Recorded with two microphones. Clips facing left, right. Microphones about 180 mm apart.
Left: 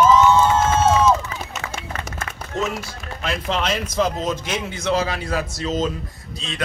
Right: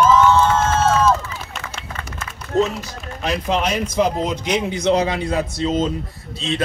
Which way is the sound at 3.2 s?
15° right (ahead or behind).